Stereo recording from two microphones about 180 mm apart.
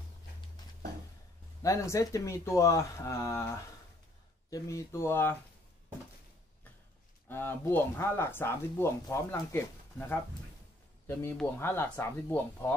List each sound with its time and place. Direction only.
1.6 s speech: 15° left (ahead or behind)
7.2 s speech: 10° left (ahead or behind)
11.5 s speech: 15° left (ahead or behind)